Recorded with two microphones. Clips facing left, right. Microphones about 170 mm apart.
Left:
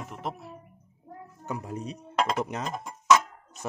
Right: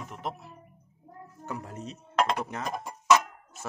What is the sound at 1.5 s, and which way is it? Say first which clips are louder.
Speech: left 4 dB; 10° left (ahead or behind).